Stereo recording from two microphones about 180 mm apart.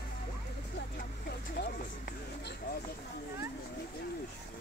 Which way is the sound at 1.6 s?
65° left (ahead or behind).